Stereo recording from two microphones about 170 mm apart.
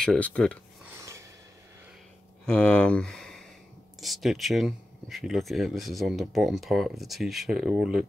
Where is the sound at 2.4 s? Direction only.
5° left (ahead or behind).